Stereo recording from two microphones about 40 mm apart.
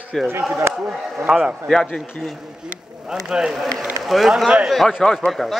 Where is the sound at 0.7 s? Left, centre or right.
Right.